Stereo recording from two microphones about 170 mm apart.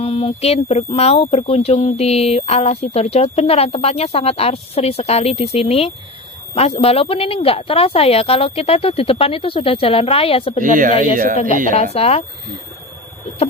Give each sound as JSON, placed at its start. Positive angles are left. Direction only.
{"t": 0.0, "sound": "speech", "side_deg": 30}
{"t": 10.6, "sound": "speech", "side_deg": -50}
{"t": 11.8, "sound": "speech", "side_deg": 40}